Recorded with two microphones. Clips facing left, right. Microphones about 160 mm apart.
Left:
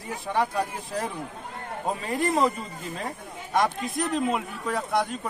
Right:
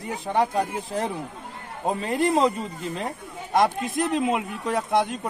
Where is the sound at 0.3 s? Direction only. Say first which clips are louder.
Right 3 dB; 25° right (ahead or behind).